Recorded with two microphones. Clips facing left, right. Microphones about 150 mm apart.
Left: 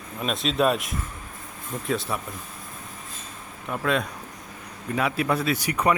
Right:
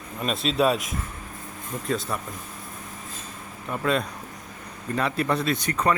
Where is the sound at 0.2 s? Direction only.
Centre (ahead or behind).